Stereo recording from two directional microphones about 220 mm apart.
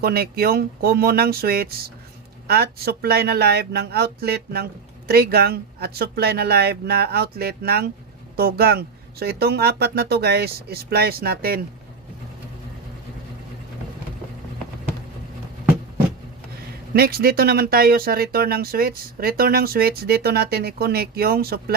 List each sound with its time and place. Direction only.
0.0 s speech: 45° right (ahead or behind)
16.9 s speech: 45° right (ahead or behind)